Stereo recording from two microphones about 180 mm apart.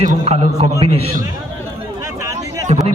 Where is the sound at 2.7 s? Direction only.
40° right (ahead or behind).